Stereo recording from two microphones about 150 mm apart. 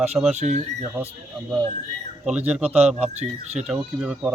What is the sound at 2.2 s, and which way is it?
Speech, 10° right (ahead or behind).